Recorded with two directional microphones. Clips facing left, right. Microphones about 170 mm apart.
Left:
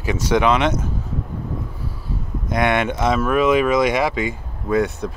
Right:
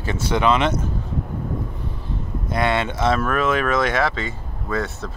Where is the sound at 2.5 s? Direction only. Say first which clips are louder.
Left 3 dB; 15° left (ahead or behind).